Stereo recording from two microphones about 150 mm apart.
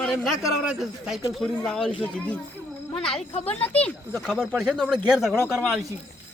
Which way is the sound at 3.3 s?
45° left (ahead or behind).